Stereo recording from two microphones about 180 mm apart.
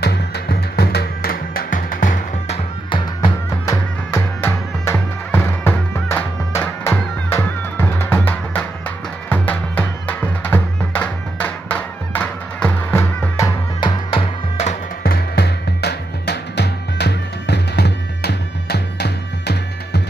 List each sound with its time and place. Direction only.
0.0 s music: 65° left (ahead or behind); by 3.0 s 35° left (ahead or behind)
3.6 s music: 15° left (ahead or behind); by 14.8 s 35° left (ahead or behind)
15.0 s music: 65° left (ahead or behind)